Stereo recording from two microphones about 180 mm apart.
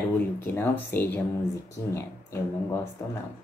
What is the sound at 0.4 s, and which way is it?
Speech, 10° left (ahead or behind).